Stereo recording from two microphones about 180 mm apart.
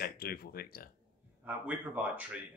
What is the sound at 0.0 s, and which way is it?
Speech, 55° left (ahead or behind).